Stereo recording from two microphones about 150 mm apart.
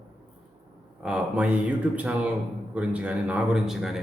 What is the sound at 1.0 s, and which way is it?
Speech, 5° right (ahead or behind).